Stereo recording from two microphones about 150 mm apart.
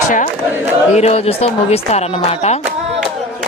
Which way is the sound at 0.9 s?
45° left (ahead or behind).